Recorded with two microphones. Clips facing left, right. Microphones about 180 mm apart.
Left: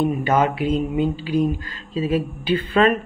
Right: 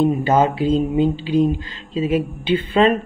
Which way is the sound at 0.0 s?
30° right (ahead or behind).